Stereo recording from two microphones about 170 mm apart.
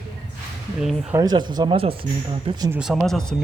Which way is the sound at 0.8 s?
Centre (ahead or behind).